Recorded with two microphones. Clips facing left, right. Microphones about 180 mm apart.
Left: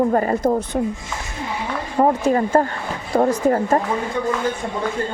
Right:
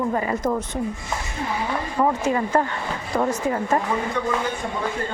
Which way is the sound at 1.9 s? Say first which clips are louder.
Left 5 dB; 40° left (ahead or behind).